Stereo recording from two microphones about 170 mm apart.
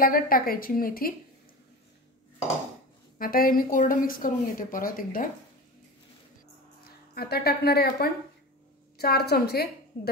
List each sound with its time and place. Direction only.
0.0 s a woman's voice: 60° left (ahead or behind)
3.2 s a woman's voice: 60° left (ahead or behind)
6.8 s a woman's voice: 65° left (ahead or behind)